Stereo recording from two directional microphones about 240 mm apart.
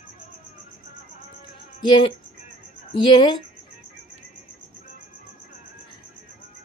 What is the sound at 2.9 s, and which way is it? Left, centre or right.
Speech, centre.